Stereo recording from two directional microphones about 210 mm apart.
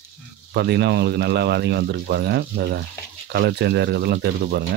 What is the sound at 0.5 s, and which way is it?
Speech, 55° right (ahead or behind).